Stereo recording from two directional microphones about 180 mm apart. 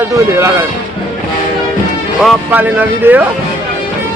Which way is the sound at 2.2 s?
5° right (ahead or behind).